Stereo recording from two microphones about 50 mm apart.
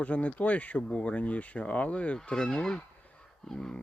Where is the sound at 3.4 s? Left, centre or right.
Centre.